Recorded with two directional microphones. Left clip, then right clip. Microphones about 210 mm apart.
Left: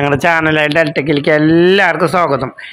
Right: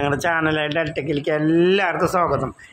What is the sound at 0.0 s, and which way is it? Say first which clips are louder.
Speech: left 8 dB; 20° left (ahead or behind).